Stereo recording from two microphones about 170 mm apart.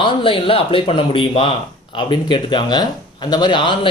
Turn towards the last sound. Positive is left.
turn(degrees=30)  # may be behind; listen again after turning